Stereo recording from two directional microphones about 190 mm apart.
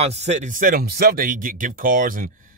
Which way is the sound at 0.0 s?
35° right (ahead or behind).